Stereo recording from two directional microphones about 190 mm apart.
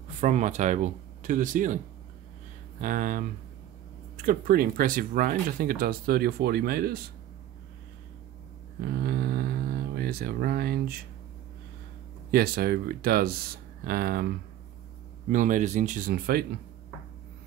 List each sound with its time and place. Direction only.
0.2 s speech: 40° right (ahead or behind)
2.8 s speech: 45° right (ahead or behind)
4.3 s speech: 50° right (ahead or behind)
8.8 s a sound: 55° right (ahead or behind)
12.3 s speech: 55° right (ahead or behind)
15.2 s speech: 45° right (ahead or behind)